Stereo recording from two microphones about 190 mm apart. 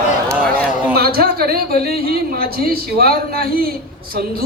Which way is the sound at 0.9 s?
55° right (ahead or behind).